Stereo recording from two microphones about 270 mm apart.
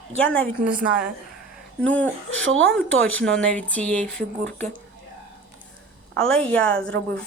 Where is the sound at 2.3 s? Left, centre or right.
Right.